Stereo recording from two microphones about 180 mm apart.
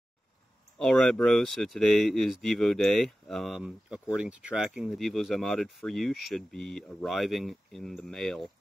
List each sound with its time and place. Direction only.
0.7 s speech: 5° left (ahead or behind)